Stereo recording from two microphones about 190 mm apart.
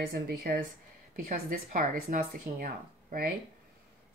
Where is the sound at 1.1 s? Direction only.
45° right (ahead or behind).